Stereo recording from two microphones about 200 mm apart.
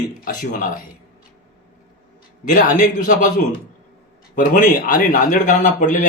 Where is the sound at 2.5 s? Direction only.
40° left (ahead or behind).